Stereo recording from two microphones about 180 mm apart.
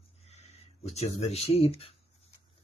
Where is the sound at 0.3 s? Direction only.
35° left (ahead or behind).